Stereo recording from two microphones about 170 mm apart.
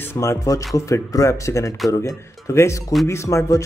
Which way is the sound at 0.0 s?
15° left (ahead or behind).